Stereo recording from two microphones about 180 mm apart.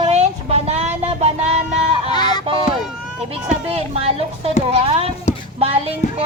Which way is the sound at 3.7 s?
35° right (ahead or behind).